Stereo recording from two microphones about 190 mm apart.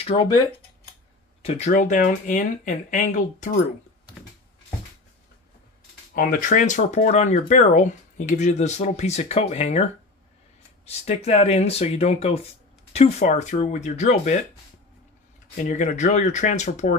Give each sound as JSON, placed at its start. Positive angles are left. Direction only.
{"t": 0.0, "sound": "speech", "side_deg": 25}
{"t": 1.4, "sound": "speech", "side_deg": 35}
{"t": 6.1, "sound": "speech", "side_deg": 45}
{"t": 10.9, "sound": "speech", "side_deg": 35}
{"t": 15.5, "sound": "speech", "side_deg": 40}